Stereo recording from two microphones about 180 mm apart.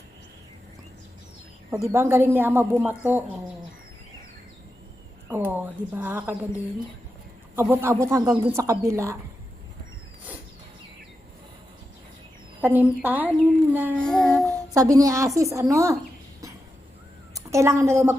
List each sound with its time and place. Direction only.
1.8 s speech: 15° right (ahead or behind)
5.5 s speech: 10° right (ahead or behind)
7.5 s speech: 15° right (ahead or behind)
12.6 s speech: 10° right (ahead or behind)
14.0 s child singing: 5° left (ahead or behind)
14.4 s speech: 15° right (ahead or behind)
17.3 s a woman's voice: 15° right (ahead or behind)